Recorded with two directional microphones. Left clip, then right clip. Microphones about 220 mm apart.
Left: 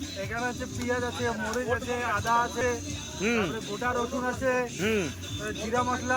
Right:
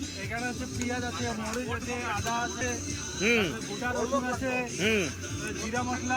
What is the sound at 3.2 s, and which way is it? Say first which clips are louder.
A man's voice: right 2 dB; 15° left (ahead or behind).